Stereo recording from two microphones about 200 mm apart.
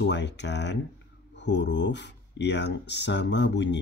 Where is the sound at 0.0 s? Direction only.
60° left (ahead or behind).